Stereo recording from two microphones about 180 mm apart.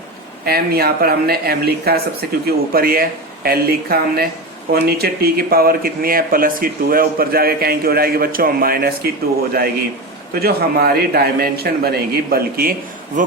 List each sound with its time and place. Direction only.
0.4 s speech: 60° right (ahead or behind)